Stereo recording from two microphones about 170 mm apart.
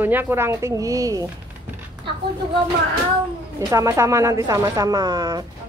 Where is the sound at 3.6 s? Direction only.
20° right (ahead or behind).